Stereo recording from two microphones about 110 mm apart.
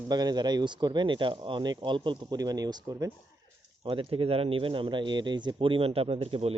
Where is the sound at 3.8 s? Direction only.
50° right (ahead or behind).